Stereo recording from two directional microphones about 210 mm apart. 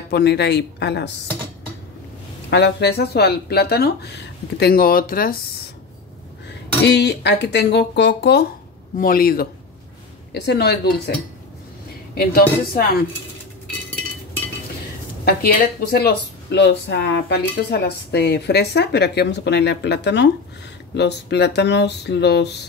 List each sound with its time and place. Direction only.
0.1 s speech: 50° left (ahead or behind)
2.5 s speech: 55° left (ahead or behind)
6.8 s speech: 55° left (ahead or behind)
12.2 s speech: 45° left (ahead or behind)
15.2 s speech: 50° left (ahead or behind)